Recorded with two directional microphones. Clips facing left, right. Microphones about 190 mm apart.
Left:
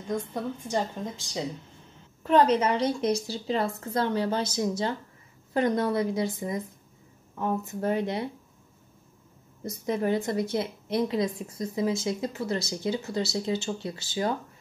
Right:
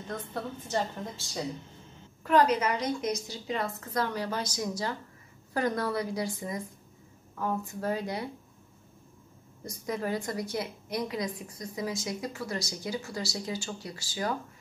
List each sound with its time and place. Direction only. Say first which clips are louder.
0.1 s a woman's voice: left 6 dB; 15° left (ahead or behind)
2.2 s a woman's voice: left 3 dB; 25° left (ahead or behind)
9.8 s a woman's voice: left 5 dB; 25° left (ahead or behind)